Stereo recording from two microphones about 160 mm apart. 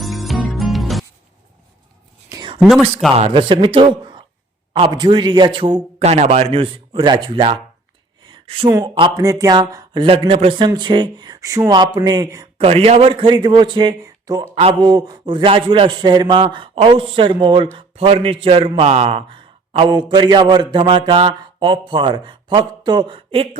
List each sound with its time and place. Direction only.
0.0 s music: centre (ahead or behind)
2.3 s a sound: 25° right (ahead or behind)
2.6 s speech: centre (ahead or behind)
3.2 s a man's voice: 35° right (ahead or behind)
8.2 s a sound: 30° right (ahead or behind)
8.6 s a man's voice: 25° right (ahead or behind)
12.6 s a man's voice: 40° right (ahead or behind)